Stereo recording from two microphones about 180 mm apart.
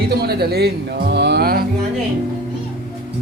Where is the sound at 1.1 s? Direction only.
70° right (ahead or behind).